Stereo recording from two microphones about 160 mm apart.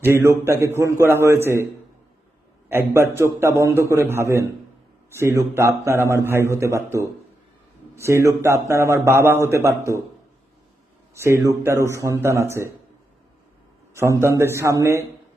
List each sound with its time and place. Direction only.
0.0 s a man's voice: 15° right (ahead or behind)
2.6 s a man's voice: 15° right (ahead or behind)
11.1 s a man's voice: 15° right (ahead or behind)
13.9 s a man's voice: 15° right (ahead or behind)